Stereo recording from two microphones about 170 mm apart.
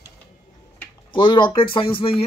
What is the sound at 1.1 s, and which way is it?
A man's voice, 30° left (ahead or behind).